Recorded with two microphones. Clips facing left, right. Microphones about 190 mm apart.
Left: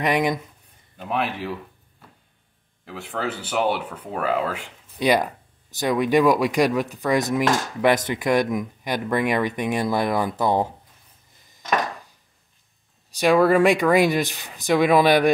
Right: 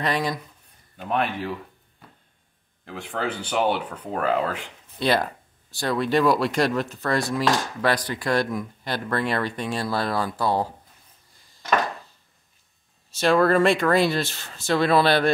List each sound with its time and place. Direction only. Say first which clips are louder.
0.0 s speech: left 4 dB; 20° left (ahead or behind)
0.9 s a man's voice: right 1 dB; 5° left (ahead or behind)
2.8 s speech: even; 5° left (ahead or behind); by 10.7 s 20° left (ahead or behind)
13.2 s speech: left 2 dB; 15° left (ahead or behind)